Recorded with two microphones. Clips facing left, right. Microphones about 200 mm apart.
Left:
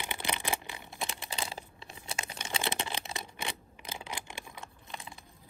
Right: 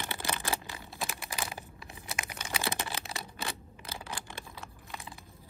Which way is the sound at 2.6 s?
15° left (ahead or behind).